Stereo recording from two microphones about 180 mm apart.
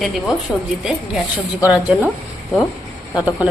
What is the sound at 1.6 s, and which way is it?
Speech, 10° right (ahead or behind).